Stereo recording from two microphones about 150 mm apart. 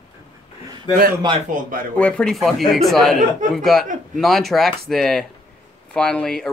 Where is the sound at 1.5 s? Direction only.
65° right (ahead or behind).